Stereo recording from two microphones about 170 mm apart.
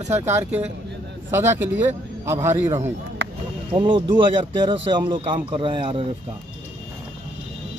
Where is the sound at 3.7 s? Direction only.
30° right (ahead or behind).